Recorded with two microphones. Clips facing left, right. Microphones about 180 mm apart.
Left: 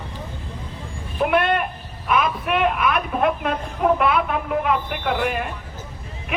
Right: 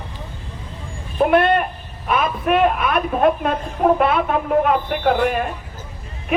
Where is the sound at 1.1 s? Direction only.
35° right (ahead or behind).